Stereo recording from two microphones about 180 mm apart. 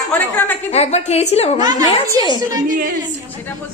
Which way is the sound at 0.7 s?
35° left (ahead or behind).